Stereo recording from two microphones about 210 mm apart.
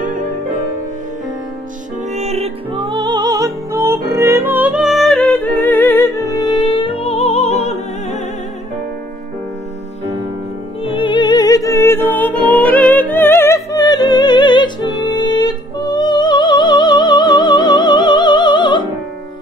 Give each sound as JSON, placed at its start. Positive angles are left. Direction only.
{"t": 0.0, "sound": "music", "side_deg": -40}
{"t": 2.1, "sound": "music", "side_deg": -30}
{"t": 10.8, "sound": "music", "side_deg": 25}